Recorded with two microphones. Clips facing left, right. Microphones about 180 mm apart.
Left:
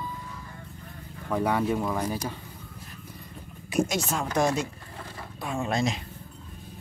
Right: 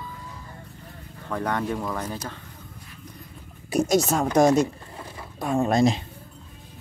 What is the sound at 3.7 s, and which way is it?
A woman's voice, 40° right (ahead or behind).